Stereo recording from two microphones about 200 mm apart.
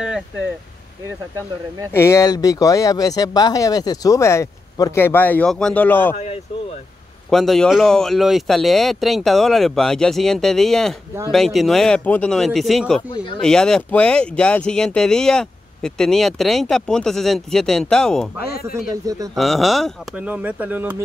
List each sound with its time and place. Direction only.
1.9 s speech: 15° left (ahead or behind)
6.1 s speech: 35° left (ahead or behind)
7.2 s speech: centre (ahead or behind)
19.0 s speech: 20° right (ahead or behind)
19.3 s speech: centre (ahead or behind)